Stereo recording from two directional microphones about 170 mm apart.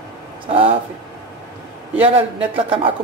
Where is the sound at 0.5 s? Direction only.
30° right (ahead or behind).